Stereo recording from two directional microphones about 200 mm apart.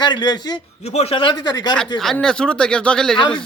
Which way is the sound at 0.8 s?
35° left (ahead or behind).